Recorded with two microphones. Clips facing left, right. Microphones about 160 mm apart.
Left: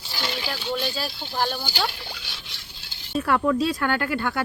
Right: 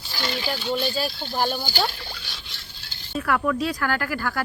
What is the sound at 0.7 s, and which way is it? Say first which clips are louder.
Speech: right 2 dB; centre (ahead or behind).